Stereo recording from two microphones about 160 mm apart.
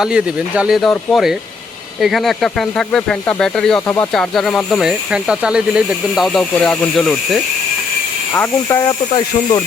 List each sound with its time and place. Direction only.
0.0 s speech: 5° right (ahead or behind)
3.8 s speech: 15° left (ahead or behind)
4.1 s speech: centre (ahead or behind)
8.3 s speech: 15° left (ahead or behind)